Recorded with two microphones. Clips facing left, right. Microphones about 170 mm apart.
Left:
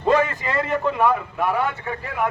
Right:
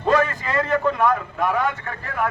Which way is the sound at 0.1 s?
15° left (ahead or behind).